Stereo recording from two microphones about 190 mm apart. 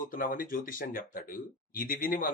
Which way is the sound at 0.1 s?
45° left (ahead or behind).